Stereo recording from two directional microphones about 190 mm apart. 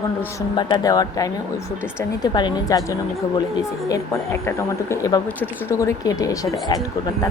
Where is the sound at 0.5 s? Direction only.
20° left (ahead or behind).